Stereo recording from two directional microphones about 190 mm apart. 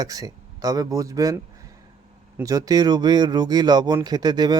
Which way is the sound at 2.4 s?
20° right (ahead or behind).